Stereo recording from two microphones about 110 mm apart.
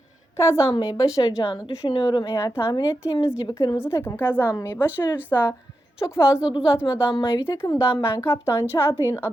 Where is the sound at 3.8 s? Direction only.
25° left (ahead or behind).